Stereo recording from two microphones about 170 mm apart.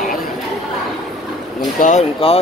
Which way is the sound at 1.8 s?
40° left (ahead or behind).